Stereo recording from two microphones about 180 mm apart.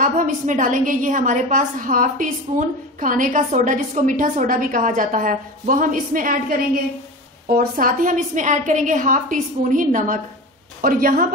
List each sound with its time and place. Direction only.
0.0 s a woman's voice: 45° right (ahead or behind)